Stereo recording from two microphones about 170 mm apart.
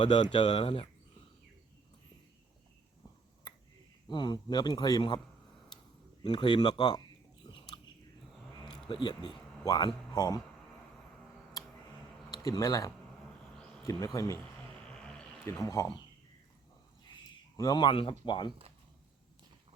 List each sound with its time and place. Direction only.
0.3 s speech: 30° left (ahead or behind)
3.5 s finger snapping: 20° left (ahead or behind)
4.1 s speech: 25° left (ahead or behind)
6.2 s speech: 30° left (ahead or behind)
8.9 s speech: 25° left (ahead or behind)
11.6 s a sound: 25° left (ahead or behind)
12.3 s speech: 20° left (ahead or behind)
14.8 s a sound: 5° left (ahead or behind)
15.6 s speech: 20° left (ahead or behind)
17.6 s speech: 25° left (ahead or behind)